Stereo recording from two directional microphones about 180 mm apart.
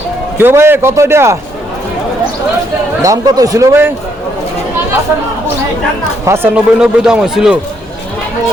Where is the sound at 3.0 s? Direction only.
20° right (ahead or behind).